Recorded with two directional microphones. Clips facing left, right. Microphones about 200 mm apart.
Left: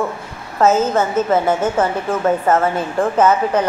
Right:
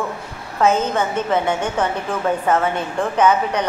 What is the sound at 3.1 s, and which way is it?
Speech, 5° left (ahead or behind).